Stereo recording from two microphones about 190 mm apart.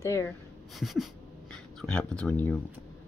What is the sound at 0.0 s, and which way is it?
Speech, 15° left (ahead or behind).